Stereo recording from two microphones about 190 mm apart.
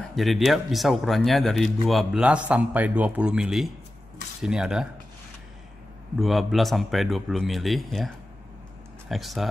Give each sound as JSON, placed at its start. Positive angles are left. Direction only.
{"t": 0.1, "sound": "speech", "side_deg": 0}
{"t": 6.1, "sound": "speech", "side_deg": 0}
{"t": 9.1, "sound": "speech", "side_deg": 0}